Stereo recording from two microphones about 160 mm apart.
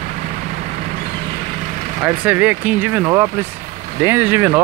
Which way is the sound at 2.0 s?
10° right (ahead or behind).